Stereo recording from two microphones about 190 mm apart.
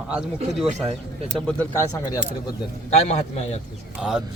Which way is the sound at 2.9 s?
35° left (ahead or behind).